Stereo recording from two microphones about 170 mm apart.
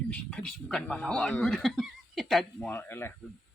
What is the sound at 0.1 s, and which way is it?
Speech, 5° left (ahead or behind).